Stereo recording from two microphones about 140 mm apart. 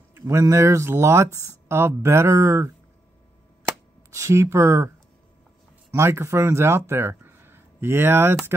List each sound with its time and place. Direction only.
0.3 s speech: 20° right (ahead or behind)
3.6 s cap gun: 20° right (ahead or behind)
5.9 s speech: 20° right (ahead or behind)